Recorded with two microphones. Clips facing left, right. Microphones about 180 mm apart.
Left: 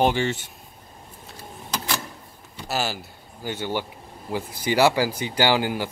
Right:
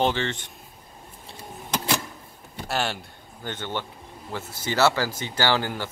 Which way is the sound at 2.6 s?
Centre (ahead or behind).